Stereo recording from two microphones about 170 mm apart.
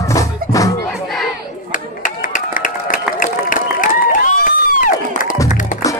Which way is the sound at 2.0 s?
50° left (ahead or behind).